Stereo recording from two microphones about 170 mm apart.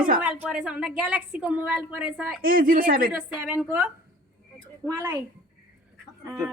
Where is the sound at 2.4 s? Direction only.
55° right (ahead or behind).